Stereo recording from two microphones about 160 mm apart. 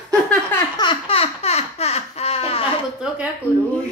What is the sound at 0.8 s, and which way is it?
Baby laughter, 30° left (ahead or behind).